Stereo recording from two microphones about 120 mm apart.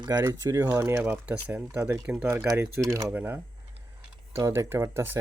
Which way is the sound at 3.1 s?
15° right (ahead or behind).